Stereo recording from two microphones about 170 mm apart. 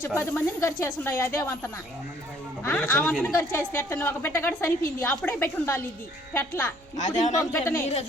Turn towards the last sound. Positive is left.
turn(degrees=10)  # may be behind; listen again after turning